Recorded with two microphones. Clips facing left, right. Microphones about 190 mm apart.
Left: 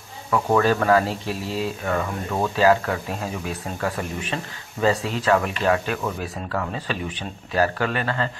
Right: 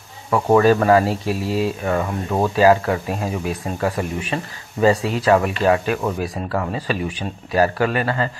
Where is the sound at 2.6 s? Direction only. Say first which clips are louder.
Right 4 dB; 15° right (ahead or behind).